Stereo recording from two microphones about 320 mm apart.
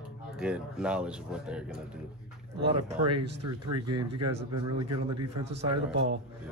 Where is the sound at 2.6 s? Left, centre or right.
Centre.